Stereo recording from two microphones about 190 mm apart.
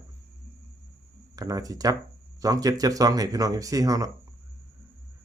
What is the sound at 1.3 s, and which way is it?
Speech, 20° right (ahead or behind).